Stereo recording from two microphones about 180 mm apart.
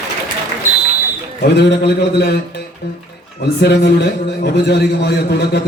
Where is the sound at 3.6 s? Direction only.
65° left (ahead or behind).